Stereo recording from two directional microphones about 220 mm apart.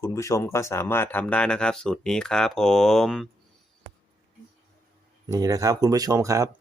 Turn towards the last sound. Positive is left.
turn(degrees=-15)  # may be behind; listen again after turning